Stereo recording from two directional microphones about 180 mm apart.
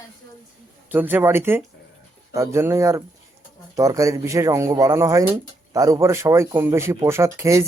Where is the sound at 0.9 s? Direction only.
10° right (ahead or behind).